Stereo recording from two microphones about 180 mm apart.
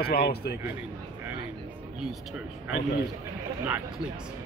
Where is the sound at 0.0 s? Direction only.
60° left (ahead or behind).